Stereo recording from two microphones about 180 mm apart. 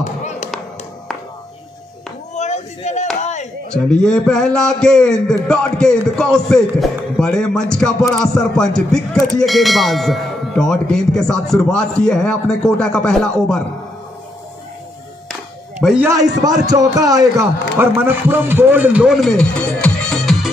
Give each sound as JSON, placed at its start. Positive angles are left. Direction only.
{"t": 0.0, "sound": "basketball bounce", "side_deg": 40}
{"t": 2.3, "sound": "a sound", "side_deg": 40}
{"t": 3.7, "sound": "speech", "side_deg": 5}
{"t": 15.8, "sound": "speech", "side_deg": -5}
{"t": 16.1, "sound": "a man's voice", "side_deg": -20}